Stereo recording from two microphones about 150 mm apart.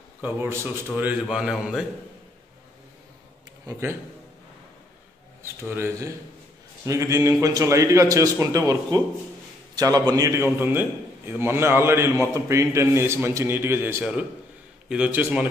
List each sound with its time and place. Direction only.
0.2 s a man's voice: 15° right (ahead or behind)
1.2 s a man's voice: 5° right (ahead or behind)
5.4 s a man's voice: 15° right (ahead or behind)